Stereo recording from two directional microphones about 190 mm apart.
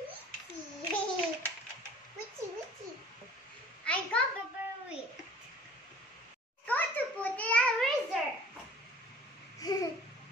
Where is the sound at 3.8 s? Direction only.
5° left (ahead or behind).